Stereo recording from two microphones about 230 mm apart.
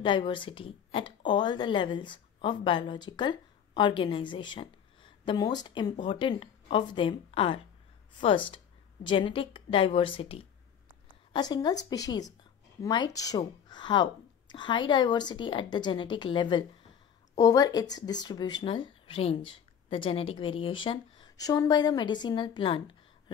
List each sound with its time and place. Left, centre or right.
0.0 s a woman's voice: left